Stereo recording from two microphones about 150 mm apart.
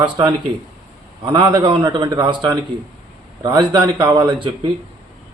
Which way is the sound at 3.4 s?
30° right (ahead or behind).